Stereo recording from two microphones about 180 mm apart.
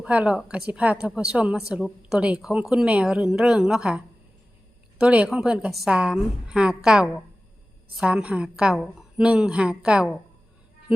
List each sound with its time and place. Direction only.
0.0 s a woman's voice: 5° right (ahead or behind)